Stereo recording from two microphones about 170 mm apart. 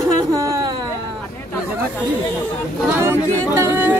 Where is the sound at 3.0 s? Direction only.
15° right (ahead or behind).